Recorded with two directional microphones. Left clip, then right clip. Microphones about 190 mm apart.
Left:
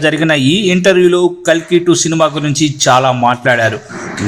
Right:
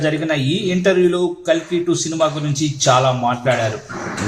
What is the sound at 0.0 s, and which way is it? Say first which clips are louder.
A man's voice: left 8 dB; 30° left (ahead or behind).